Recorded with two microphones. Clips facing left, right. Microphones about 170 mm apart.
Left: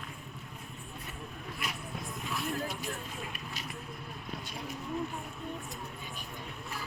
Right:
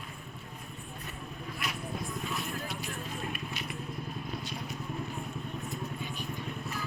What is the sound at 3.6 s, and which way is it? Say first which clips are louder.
Vehicle: right 3 dB; 40° left (ahead or behind).